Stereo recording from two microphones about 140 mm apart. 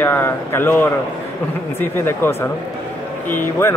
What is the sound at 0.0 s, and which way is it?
Speech, 15° left (ahead or behind).